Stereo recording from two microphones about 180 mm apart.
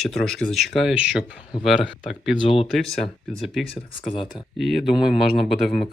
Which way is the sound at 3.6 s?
30° left (ahead or behind).